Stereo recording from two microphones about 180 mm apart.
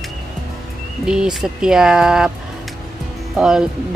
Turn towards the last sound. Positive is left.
turn(degrees=0)  # may be behind; listen again after turning